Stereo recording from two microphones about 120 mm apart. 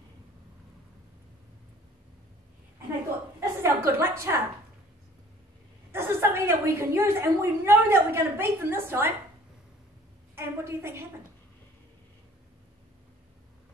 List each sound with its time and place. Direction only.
3.3 s a sound: 20° right (ahead or behind)
5.9 s a woman's voice: 20° right (ahead or behind)
10.3 s a woman's voice: 20° right (ahead or behind)